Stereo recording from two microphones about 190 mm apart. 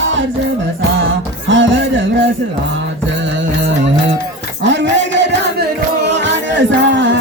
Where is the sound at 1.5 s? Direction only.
80° right.